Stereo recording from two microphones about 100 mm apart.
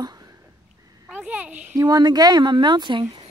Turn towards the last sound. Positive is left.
turn(degrees=-50)  # may be behind; listen again after turning